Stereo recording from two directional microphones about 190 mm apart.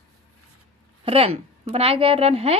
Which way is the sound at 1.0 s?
30° right (ahead or behind).